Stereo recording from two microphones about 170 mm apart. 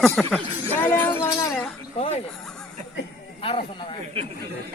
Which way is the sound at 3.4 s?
35° left (ahead or behind).